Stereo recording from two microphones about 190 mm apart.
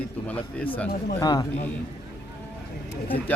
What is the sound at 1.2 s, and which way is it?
Speech, 20° left (ahead or behind).